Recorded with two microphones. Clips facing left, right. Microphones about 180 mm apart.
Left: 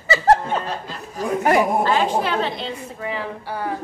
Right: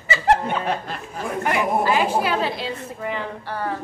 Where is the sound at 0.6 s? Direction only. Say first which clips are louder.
Right 4 dB; 60° right (ahead or behind).